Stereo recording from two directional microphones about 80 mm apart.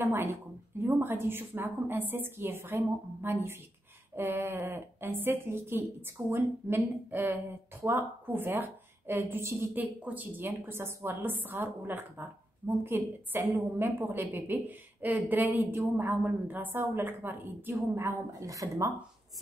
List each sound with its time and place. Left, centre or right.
0.0 s a woman's voice: right
18.4 s a woman's voice: right